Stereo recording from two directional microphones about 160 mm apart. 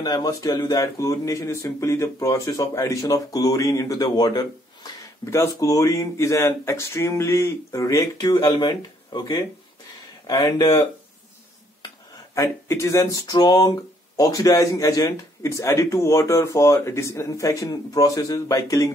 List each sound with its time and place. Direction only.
0.0 s speech: 25° left (ahead or behind)
12.4 s speech: 15° left (ahead or behind)